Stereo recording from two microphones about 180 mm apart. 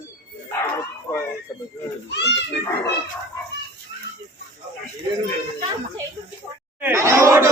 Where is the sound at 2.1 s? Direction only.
70° left (ahead or behind).